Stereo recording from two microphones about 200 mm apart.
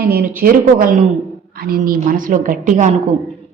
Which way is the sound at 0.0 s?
50° right (ahead or behind).